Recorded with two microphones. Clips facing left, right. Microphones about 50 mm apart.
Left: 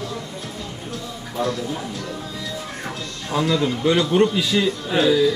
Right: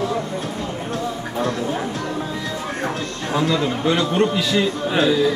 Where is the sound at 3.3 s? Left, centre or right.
Centre.